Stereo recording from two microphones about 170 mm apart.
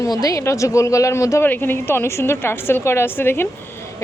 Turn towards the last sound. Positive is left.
turn(degrees=15)  # may be behind; listen again after turning